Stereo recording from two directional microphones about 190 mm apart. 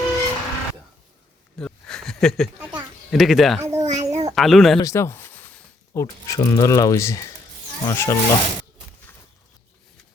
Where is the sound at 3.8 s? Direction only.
35° right (ahead or behind).